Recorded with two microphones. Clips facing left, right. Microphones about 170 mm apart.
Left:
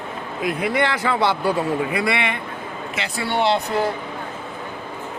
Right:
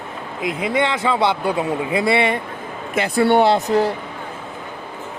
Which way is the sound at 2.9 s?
55° right (ahead or behind).